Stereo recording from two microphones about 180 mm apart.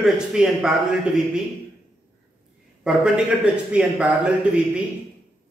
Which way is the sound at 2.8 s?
5° right (ahead or behind).